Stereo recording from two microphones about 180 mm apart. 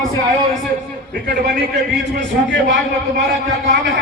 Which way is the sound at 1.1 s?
60° right (ahead or behind).